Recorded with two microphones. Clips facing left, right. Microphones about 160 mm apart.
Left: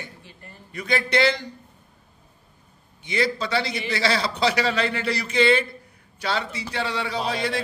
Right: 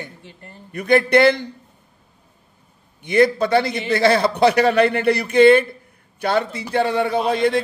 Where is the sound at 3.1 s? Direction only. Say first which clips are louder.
Right 9 dB; 55° right (ahead or behind).